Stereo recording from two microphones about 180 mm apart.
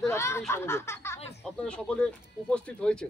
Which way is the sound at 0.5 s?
15° left (ahead or behind).